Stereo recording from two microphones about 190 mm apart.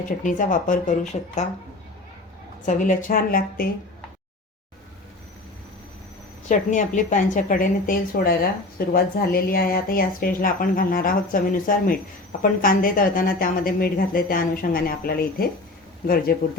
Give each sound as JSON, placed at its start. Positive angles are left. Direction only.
{"t": 0.2, "sound": "speech", "side_deg": 45}
{"t": 2.6, "sound": "speech", "side_deg": 40}
{"t": 6.5, "sound": "speech", "side_deg": 40}